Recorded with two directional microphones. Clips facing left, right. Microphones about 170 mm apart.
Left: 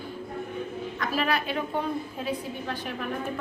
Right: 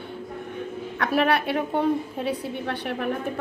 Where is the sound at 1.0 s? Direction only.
65° right (ahead or behind).